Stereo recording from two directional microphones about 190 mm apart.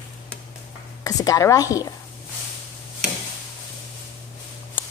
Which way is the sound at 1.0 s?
20° left (ahead or behind).